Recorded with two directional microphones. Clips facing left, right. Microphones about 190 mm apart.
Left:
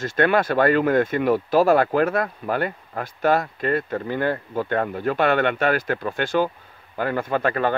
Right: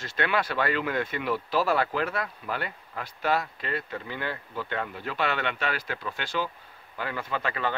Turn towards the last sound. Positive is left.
turn(degrees=50)  # may be behind; listen again after turning